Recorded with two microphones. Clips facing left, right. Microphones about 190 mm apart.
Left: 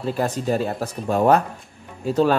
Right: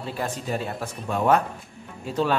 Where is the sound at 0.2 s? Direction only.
40° left (ahead or behind).